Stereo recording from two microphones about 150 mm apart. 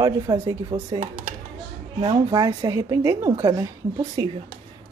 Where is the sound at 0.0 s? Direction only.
25° right (ahead or behind).